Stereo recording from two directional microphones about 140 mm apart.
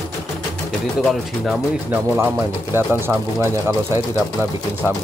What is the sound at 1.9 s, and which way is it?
Speech, 15° right (ahead or behind).